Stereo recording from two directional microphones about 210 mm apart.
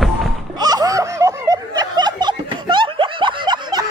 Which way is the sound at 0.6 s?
20° right (ahead or behind).